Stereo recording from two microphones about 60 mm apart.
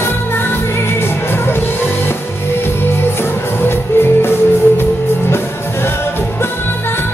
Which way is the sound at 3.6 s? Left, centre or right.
Left.